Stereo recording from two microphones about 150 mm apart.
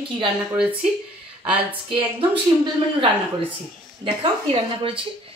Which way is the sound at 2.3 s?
35° right (ahead or behind).